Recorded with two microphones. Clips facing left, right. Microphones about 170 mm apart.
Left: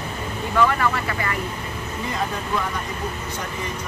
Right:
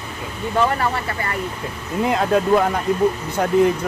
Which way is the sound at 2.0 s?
70° right (ahead or behind).